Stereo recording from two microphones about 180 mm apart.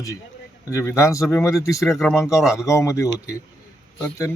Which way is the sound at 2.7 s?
15° left (ahead or behind).